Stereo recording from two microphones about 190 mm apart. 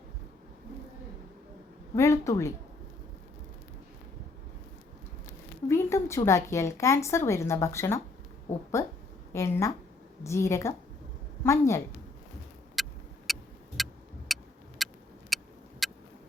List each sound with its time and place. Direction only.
2.0 s a woman's voice: 15° left (ahead or behind)
5.6 s a woman's voice: 15° left (ahead or behind)
12.7 s vehicle: centre (ahead or behind)
14.8 s a sound: centre (ahead or behind)
15.3 s vehicle: centre (ahead or behind)
15.8 s a sound: centre (ahead or behind)